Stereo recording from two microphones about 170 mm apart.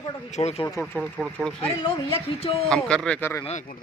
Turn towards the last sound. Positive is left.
turn(degrees=40)  # may be behind; listen again after turning